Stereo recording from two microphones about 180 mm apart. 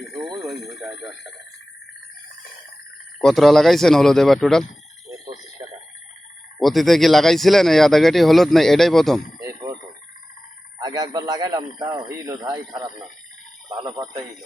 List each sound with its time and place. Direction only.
0.1 s speech: centre (ahead or behind)
3.2 s speech: centre (ahead or behind)
6.6 s speech: centre (ahead or behind)
9.4 s vehicle: 20° right (ahead or behind)
10.8 s speech: 20° right (ahead or behind)